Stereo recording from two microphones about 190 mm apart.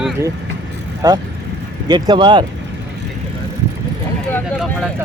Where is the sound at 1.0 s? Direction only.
20° right (ahead or behind).